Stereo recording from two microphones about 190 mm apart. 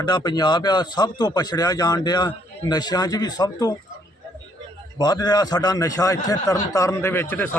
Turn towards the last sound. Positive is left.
turn(degrees=10)  # may be behind; listen again after turning